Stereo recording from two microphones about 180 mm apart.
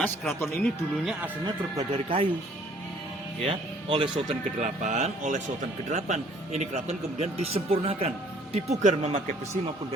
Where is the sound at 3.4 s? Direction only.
25° right (ahead or behind).